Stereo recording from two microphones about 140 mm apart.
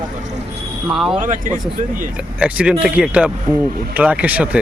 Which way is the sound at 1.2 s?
65° right (ahead or behind).